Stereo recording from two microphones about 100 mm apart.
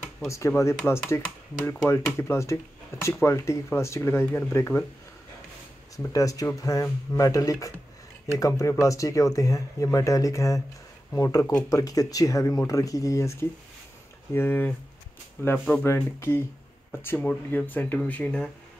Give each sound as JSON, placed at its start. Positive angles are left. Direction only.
{"t": 0.3, "sound": "speech", "side_deg": 30}
{"t": 2.1, "sound": "speech", "side_deg": 30}
{"t": 6.1, "sound": "speech", "side_deg": 35}